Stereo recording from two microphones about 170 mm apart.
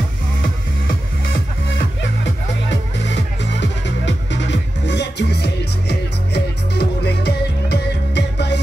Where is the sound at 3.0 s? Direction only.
90° left.